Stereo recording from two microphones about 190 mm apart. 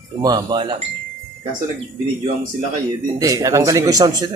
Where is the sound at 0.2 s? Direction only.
20° right (ahead or behind).